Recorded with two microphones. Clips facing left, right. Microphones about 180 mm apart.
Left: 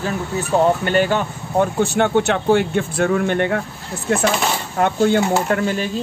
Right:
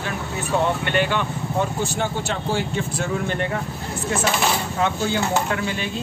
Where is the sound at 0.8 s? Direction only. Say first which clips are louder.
Left 4 dB; 40° left (ahead or behind).